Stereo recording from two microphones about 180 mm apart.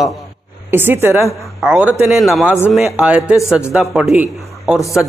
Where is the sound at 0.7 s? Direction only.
10° right (ahead or behind).